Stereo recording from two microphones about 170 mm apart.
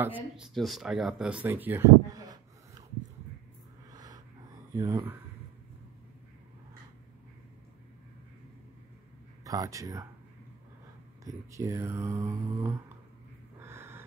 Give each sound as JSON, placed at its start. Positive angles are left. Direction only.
{"t": 0.0, "sound": "speech", "side_deg": -10}
{"t": 3.9, "sound": "a sound", "side_deg": -25}
{"t": 4.7, "sound": "speech", "side_deg": -20}
{"t": 9.4, "sound": "speech", "side_deg": -20}
{"t": 11.2, "sound": "speech", "side_deg": -15}
{"t": 13.6, "sound": "a sound", "side_deg": -15}